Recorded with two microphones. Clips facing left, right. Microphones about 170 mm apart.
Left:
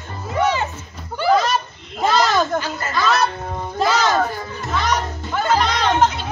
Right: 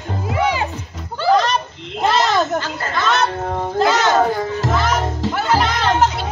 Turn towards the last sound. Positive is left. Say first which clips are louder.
# right 1 dB
turn(degrees=-5)  # may be behind; listen again after turning